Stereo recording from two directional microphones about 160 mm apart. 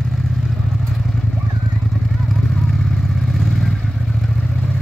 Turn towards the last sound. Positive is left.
turn(degrees=0)  # may be behind; listen again after turning